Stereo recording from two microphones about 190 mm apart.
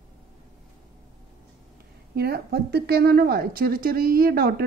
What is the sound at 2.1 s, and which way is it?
A woman's voice, 55° right (ahead or behind).